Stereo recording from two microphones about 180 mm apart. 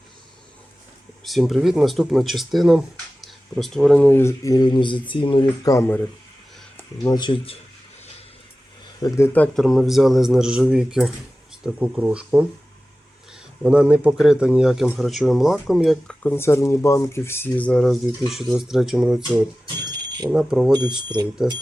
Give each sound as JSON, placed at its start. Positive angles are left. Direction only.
{"t": 1.2, "sound": "speech", "side_deg": 0}
{"t": 9.0, "sound": "speech", "side_deg": 15}
{"t": 9.6, "sound": "speech", "side_deg": 0}
{"t": 19.6, "sound": "a sound", "side_deg": -20}
{"t": 20.3, "sound": "speech", "side_deg": -5}